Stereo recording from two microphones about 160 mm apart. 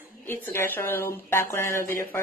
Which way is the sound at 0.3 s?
15° left (ahead or behind).